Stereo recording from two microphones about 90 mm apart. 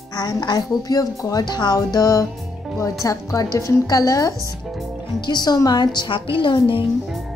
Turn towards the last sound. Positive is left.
turn(degrees=70)  # may be behind; listen again after turning